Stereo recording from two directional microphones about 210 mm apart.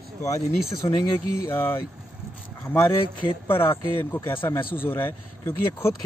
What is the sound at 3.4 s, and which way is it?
Speech, 10° left (ahead or behind).